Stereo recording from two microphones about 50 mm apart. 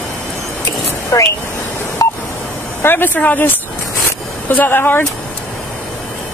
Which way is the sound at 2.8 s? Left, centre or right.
Left.